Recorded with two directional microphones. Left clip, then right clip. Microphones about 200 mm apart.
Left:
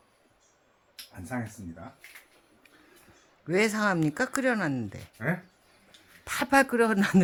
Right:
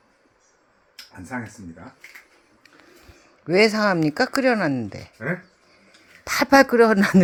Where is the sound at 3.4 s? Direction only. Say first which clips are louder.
Right 8 dB; 15° right (ahead or behind).